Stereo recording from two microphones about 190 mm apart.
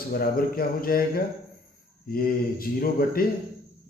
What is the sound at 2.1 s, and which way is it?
Speech, 50° left (ahead or behind).